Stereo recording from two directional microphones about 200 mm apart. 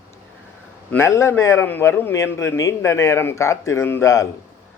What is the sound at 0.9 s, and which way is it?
A man's voice, 10° left (ahead or behind).